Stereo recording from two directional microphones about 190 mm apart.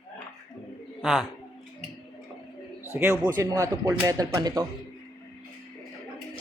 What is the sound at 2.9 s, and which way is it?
A man's voice, 10° right (ahead or behind).